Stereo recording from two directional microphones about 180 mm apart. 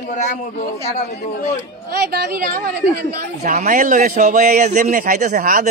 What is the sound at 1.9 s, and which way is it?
Speech, 60° right (ahead or behind).